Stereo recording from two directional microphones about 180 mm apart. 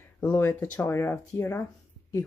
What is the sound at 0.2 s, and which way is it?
Speech, 10° left (ahead or behind).